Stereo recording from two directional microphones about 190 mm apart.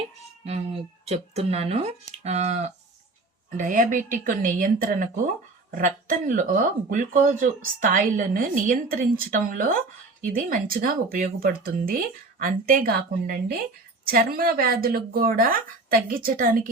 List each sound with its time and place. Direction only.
1.0 s speech: 35° right (ahead or behind)